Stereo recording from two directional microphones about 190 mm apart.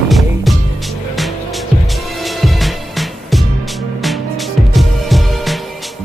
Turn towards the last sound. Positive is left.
turn(degrees=0)  # may be behind; listen again after turning